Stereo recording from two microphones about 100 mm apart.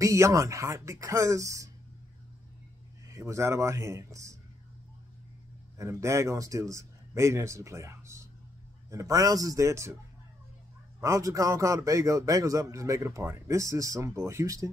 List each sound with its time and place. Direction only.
0.0 s a man's voice: 30° right (ahead or behind)
3.1 s speech: 30° right (ahead or behind)
5.8 s a man's voice: 30° right (ahead or behind)
11.0 s a man's voice: 35° right (ahead or behind)